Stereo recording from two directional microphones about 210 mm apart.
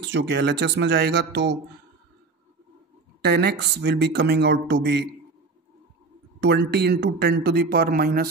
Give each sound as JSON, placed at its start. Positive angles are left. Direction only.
{"t": 0.0, "sound": "speech", "side_deg": -55}
{"t": 3.2, "sound": "speech", "side_deg": -50}
{"t": 6.4, "sound": "speech", "side_deg": -55}